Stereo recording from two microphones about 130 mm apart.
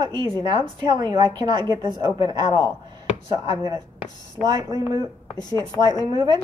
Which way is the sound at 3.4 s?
30° right (ahead or behind).